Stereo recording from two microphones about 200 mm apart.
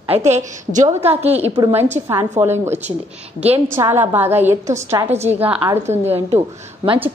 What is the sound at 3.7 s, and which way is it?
A woman's voice, 10° right (ahead or behind).